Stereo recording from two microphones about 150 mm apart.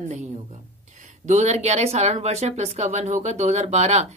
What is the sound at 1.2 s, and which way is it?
Speech, 50° right (ahead or behind).